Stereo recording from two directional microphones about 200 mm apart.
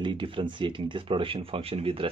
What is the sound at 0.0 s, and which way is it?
Speech, 25° right (ahead or behind).